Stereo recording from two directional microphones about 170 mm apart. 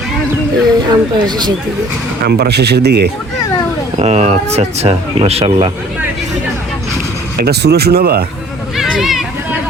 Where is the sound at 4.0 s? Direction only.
40° right (ahead or behind).